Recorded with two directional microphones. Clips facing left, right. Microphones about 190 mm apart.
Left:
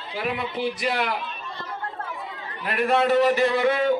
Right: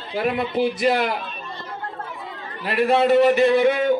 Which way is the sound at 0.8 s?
45° right (ahead or behind).